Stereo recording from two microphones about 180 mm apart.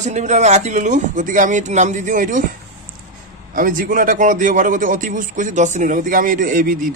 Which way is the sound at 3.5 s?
50° right (ahead or behind).